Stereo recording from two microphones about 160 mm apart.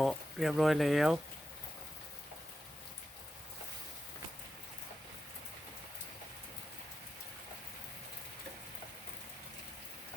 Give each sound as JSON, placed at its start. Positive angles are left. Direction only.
{"t": 0.0, "sound": "speech", "side_deg": 0}